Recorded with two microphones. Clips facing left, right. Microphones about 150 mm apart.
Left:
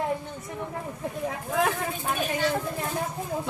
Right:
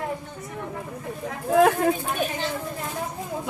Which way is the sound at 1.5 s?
50° right (ahead or behind).